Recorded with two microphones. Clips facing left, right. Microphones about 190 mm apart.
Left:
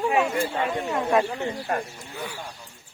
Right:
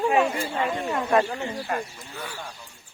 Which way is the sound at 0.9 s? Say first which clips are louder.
Even; centre (ahead or behind).